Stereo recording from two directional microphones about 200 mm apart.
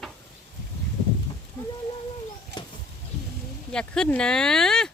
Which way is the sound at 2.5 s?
55° right (ahead or behind).